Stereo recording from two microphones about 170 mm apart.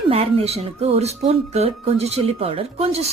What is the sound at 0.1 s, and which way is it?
Speech, 35° right (ahead or behind).